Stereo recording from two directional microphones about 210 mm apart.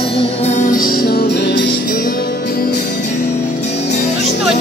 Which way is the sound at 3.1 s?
35° left (ahead or behind).